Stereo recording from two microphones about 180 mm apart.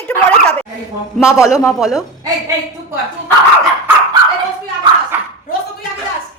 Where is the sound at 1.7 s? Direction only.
Centre (ahead or behind).